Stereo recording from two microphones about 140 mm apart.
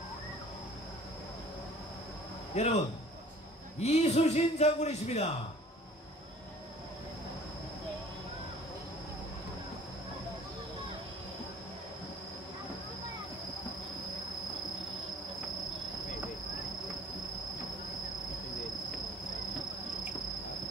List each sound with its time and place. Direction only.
2.5 s a man's voice: 50° left (ahead or behind)
3.8 s a man's voice: 50° left (ahead or behind)